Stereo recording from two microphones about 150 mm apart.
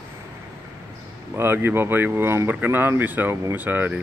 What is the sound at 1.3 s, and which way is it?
Speech, 15° right (ahead or behind).